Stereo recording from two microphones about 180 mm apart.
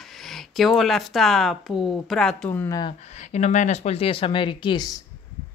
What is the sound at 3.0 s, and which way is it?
A woman's voice, 40° left (ahead or behind).